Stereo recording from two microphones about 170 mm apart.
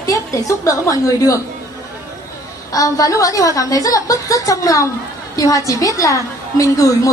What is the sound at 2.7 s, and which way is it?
A woman's voice, 20° left (ahead or behind).